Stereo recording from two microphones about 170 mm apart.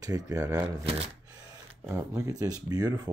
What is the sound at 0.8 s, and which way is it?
Speech, 35° right (ahead or behind).